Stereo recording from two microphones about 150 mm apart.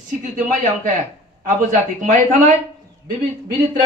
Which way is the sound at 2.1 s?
60° right (ahead or behind).